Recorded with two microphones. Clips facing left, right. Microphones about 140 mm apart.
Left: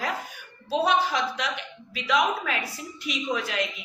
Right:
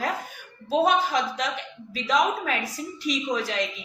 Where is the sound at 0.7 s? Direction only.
45° right (ahead or behind).